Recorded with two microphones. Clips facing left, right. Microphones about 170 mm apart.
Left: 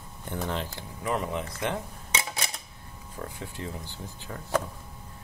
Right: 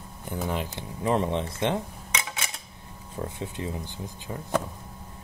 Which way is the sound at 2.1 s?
40° left (ahead or behind).